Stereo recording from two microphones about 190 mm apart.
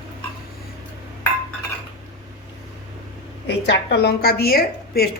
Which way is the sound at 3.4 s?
60° left (ahead or behind).